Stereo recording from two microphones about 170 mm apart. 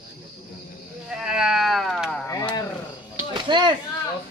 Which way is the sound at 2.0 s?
15° left (ahead or behind).